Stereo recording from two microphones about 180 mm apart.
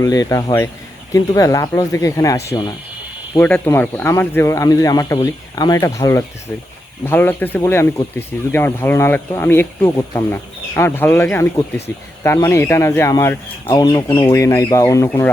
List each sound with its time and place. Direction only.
0.0 s speech: 20° left (ahead or behind)